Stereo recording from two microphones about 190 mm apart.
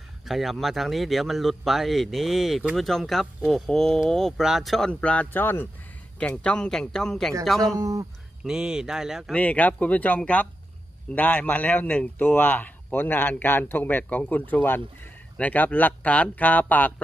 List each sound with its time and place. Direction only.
0.3 s speech: centre (ahead or behind)
7.8 s speech: 15° right (ahead or behind)
8.5 s speech: 5° right (ahead or behind)
9.4 s speech: 10° left (ahead or behind)